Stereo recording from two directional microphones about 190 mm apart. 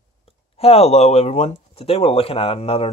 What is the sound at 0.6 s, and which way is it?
Speech, 30° left (ahead or behind).